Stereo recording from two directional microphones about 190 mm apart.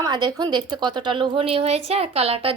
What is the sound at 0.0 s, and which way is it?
A child's voice, 25° right (ahead or behind).